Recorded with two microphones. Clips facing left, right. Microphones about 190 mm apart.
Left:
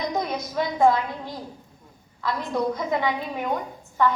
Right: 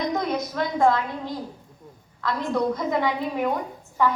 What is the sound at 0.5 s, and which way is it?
Speech, 5° left (ahead or behind).